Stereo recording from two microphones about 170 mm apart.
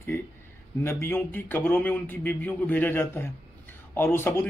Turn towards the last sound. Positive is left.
turn(degrees=15)  # may be behind; listen again after turning